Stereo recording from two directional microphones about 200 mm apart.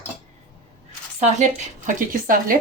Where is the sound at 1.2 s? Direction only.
40° right (ahead or behind).